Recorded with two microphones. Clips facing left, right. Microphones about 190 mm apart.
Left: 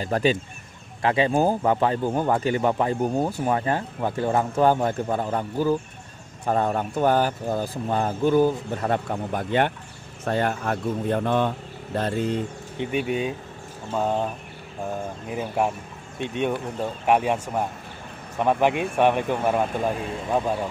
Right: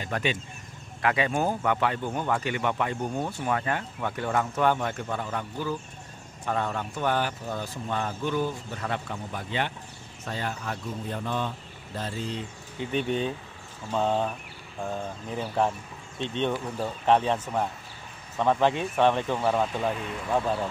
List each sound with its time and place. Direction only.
0.0 s speech: 35° left (ahead or behind); by 12.4 s 55° left (ahead or behind)
12.9 s speech: 10° left (ahead or behind)